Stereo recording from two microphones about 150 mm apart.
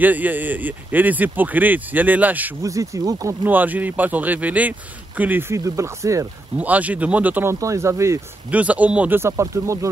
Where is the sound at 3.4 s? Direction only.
10° right (ahead or behind).